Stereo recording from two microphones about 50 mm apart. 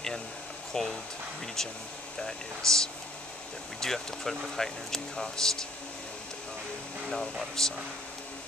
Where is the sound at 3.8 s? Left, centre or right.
Centre.